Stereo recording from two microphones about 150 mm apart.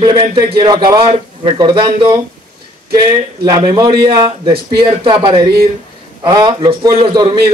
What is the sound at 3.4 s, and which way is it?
A man's voice, 30° right (ahead or behind).